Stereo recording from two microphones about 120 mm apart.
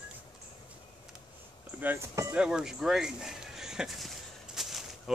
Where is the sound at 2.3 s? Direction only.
5° right (ahead or behind).